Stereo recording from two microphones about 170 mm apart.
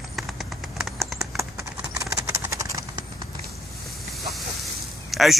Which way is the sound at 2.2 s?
15° right (ahead or behind).